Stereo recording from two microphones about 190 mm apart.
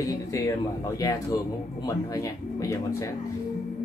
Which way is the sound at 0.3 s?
15° left (ahead or behind).